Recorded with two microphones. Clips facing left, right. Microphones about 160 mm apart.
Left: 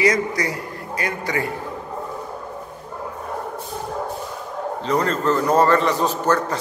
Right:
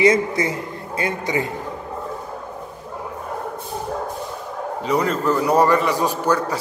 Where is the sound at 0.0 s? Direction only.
25° right (ahead or behind).